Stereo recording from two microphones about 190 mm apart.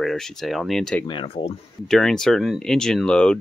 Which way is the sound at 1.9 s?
5° left (ahead or behind).